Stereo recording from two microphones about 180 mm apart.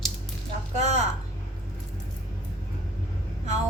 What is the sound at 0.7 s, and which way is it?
Speech, 40° right (ahead or behind).